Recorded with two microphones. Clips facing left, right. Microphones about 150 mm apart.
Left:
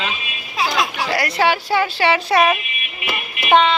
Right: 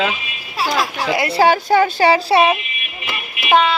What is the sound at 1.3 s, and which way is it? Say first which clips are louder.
Speech: right 6 dB; 40° right (ahead or behind).